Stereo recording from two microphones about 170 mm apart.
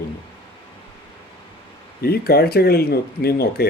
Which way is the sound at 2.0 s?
65° left (ahead or behind).